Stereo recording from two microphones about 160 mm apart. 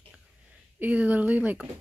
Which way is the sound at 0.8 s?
10° right (ahead or behind).